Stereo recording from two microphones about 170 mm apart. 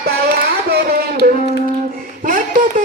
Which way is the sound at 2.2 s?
55° right (ahead or behind).